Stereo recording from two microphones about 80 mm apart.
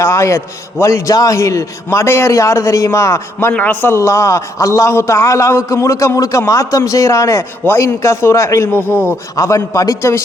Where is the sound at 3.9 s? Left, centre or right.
Left.